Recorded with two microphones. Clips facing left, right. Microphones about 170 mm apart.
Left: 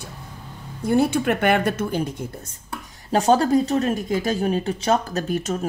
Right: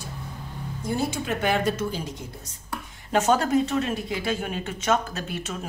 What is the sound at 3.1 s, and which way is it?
Speech, 35° left (ahead or behind).